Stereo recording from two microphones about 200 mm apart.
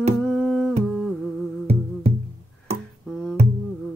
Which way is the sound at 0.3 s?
Centre (ahead or behind).